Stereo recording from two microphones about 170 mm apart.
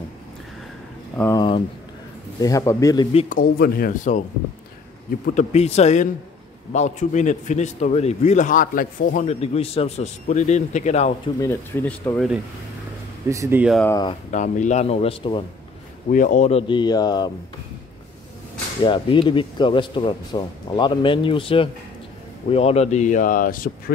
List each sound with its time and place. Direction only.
1.1 s speech: 10° left (ahead or behind)
2.4 s speech: 20° left (ahead or behind)
3.3 s a man's voice: 60° left (ahead or behind)
5.3 s a man's voice: 45° left (ahead or behind)
11.4 s speech: 10° left (ahead or behind)
13.3 s speech: 15° right (ahead or behind)
14.3 s speech: 45° left (ahead or behind)
16.1 s speech: 50° left (ahead or behind); by 17.3 s 25° left (ahead or behind)
18.8 s a man's voice: 30° left (ahead or behind); by 23.7 s 55° left (ahead or behind)